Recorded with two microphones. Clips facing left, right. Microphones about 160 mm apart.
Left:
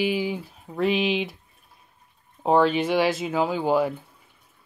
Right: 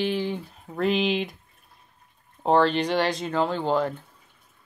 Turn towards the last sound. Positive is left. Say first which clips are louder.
# left 2 dB
turn(degrees=10)  # may be behind; listen again after turning